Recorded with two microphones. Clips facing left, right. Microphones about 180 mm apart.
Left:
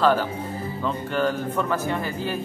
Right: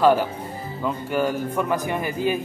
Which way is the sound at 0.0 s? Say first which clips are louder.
Right 3 dB; 10° right (ahead or behind).